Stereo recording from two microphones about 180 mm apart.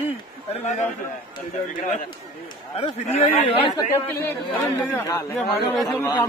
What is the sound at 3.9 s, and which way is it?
A man's voice, 10° left (ahead or behind).